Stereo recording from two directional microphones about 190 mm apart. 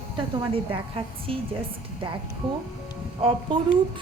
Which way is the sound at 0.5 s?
30° right (ahead or behind).